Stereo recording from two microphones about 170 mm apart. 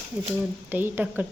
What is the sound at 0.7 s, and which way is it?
Speech, 10° right (ahead or behind).